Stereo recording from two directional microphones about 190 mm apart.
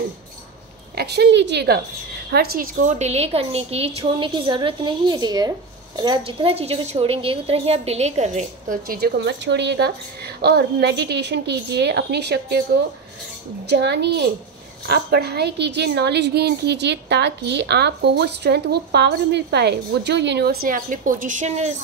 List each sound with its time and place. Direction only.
0.9 s a woman's voice: 60° right (ahead or behind)
2.3 s a woman's voice: 50° right (ahead or behind)
13.7 s a woman's voice: 60° right (ahead or behind); by 21.7 s 35° right (ahead or behind)